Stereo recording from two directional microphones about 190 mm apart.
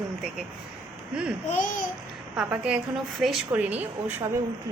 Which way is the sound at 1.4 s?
40° left (ahead or behind).